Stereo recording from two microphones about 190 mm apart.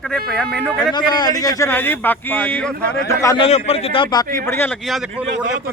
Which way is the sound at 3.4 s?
30° left (ahead or behind).